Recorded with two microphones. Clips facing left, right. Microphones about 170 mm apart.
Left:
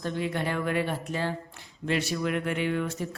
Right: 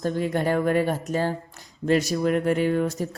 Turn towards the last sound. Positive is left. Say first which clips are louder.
# right 5 dB
turn(degrees=-40)  # may be behind; listen again after turning